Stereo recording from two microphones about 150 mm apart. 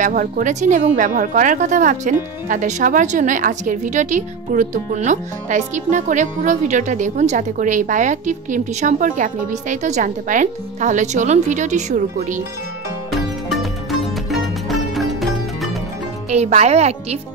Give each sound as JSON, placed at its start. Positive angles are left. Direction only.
{"t": 0.0, "sound": "a woman's voice", "side_deg": -60}
{"t": 13.1, "sound": "music", "side_deg": 0}
{"t": 16.3, "sound": "a woman's voice", "side_deg": -45}